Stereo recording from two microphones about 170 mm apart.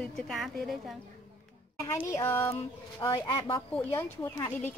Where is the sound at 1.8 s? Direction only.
15° left (ahead or behind).